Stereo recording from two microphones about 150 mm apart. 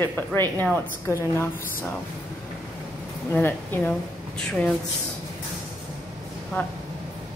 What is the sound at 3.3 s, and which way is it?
A woman's voice, 10° left (ahead or behind).